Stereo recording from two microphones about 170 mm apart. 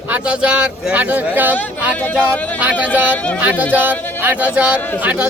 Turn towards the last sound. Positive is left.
turn(degrees=-10)  # may be behind; listen again after turning